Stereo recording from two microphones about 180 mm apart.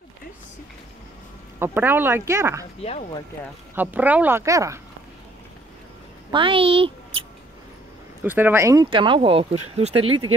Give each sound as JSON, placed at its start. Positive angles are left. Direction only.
{"t": 1.6, "sound": "speech", "side_deg": -10}
{"t": 2.8, "sound": "speech", "side_deg": 35}
{"t": 3.7, "sound": "speech", "side_deg": -10}
{"t": 6.3, "sound": "speech", "side_deg": -30}
{"t": 8.2, "sound": "speech", "side_deg": -10}
{"t": 8.9, "sound": "speech", "side_deg": -30}